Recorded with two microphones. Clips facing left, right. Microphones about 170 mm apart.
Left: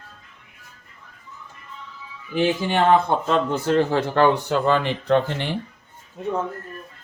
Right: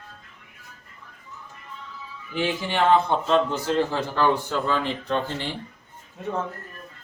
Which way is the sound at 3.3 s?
50° left (ahead or behind).